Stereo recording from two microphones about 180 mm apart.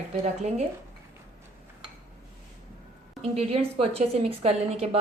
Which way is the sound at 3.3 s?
35° right (ahead or behind).